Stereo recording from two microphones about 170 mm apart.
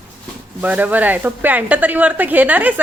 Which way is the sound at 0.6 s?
10° right (ahead or behind).